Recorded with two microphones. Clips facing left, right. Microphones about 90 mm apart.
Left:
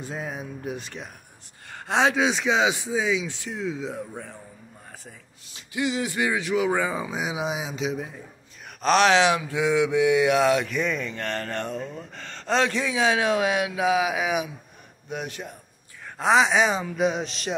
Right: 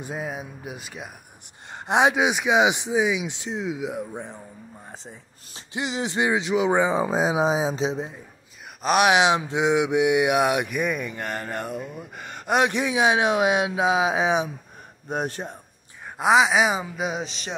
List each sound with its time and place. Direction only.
0.0 s mantra: 10° right (ahead or behind)
5.7 s speech: 25° right (ahead or behind)
7.0 s speech: 35° right (ahead or behind)
8.8 s mantra: 15° right (ahead or behind); by 14.5 s 30° right (ahead or behind)
15.0 s speech: 40° right (ahead or behind)
16.2 s speech: 5° right (ahead or behind)